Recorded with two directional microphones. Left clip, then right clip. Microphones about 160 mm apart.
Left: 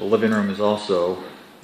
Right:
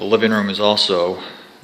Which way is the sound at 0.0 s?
25° right (ahead or behind).